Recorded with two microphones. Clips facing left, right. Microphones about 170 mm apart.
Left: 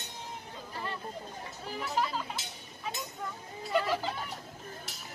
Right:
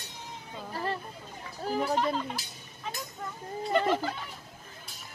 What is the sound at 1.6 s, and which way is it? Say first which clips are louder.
Chatter: right 10 dB; 40° right (ahead or behind).